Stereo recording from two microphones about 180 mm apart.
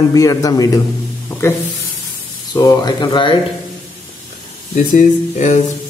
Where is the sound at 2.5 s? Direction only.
20° left (ahead or behind).